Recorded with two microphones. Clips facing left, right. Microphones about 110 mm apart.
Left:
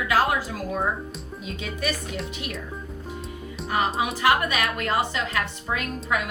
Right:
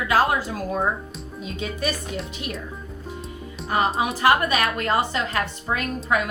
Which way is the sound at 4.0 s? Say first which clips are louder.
Right 2 dB; 35° right (ahead or behind).